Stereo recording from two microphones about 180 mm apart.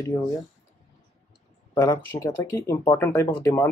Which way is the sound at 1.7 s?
15° left (ahead or behind).